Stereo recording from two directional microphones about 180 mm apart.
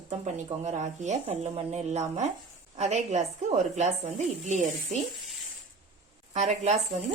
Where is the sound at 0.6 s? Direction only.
40° right (ahead or behind).